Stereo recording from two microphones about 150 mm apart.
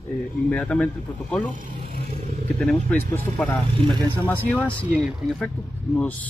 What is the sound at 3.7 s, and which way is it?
Speech, 30° right (ahead or behind).